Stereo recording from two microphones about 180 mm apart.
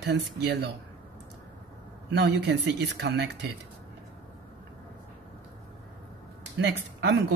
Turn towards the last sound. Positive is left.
turn(degrees=-70)  # may be behind; listen again after turning